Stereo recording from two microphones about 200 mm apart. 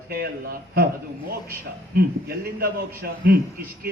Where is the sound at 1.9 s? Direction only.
50° right (ahead or behind).